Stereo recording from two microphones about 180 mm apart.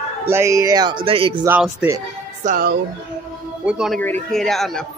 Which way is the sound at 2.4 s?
45° right (ahead or behind).